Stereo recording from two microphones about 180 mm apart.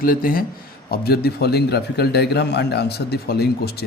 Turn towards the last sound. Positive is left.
turn(degrees=60)  # may be behind; listen again after turning